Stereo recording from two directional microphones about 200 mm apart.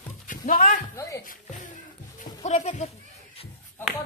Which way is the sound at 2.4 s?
35° left (ahead or behind).